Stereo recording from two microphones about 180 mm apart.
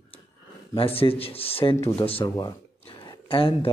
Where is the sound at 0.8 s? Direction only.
30° left (ahead or behind).